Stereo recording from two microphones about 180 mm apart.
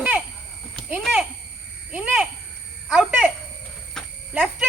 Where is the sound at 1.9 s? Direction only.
10° right (ahead or behind).